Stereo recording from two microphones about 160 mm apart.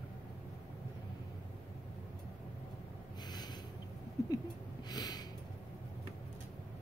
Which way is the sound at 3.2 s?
25° left (ahead or behind).